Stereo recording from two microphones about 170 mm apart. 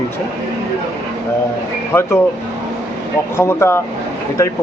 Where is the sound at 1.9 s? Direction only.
15° left (ahead or behind).